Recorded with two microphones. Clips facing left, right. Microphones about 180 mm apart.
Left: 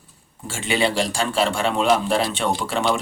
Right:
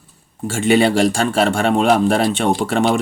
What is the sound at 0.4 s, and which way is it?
Speech, 50° right (ahead or behind).